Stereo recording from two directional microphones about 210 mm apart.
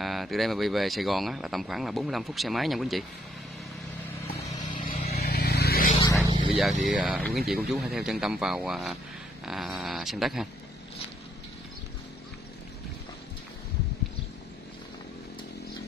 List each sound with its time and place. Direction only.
0.0 s speech: centre (ahead or behind)
4.8 s vehicle: 50° left (ahead or behind)
5.9 s vehicle: 15° left (ahead or behind)
6.2 s vehicle: 20° right (ahead or behind)
6.5 s speech: centre (ahead or behind)